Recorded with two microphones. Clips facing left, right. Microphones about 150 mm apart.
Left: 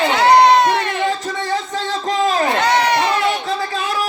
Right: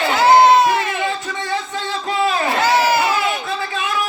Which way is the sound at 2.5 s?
5° right (ahead or behind).